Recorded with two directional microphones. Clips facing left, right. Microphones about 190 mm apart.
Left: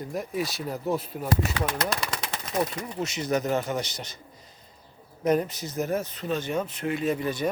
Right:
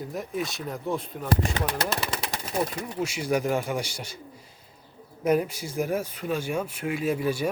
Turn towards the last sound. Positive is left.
turn(degrees=-10)  # may be behind; listen again after turning